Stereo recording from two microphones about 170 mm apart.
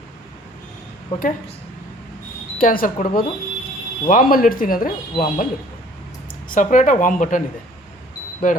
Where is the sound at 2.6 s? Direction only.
55° left (ahead or behind).